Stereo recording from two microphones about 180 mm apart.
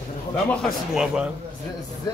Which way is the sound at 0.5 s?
5° left (ahead or behind).